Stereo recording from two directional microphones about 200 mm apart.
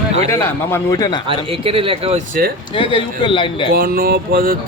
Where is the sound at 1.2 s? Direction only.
30° right (ahead or behind).